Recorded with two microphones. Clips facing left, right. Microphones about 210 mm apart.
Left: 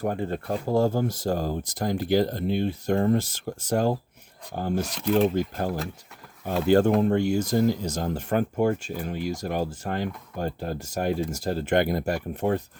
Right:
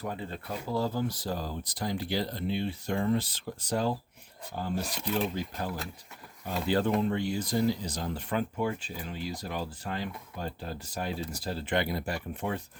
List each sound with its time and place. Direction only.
0.0 s speech: 50° left (ahead or behind)
4.9 s speech: centre (ahead or behind)
5.1 s speech: 50° left (ahead or behind)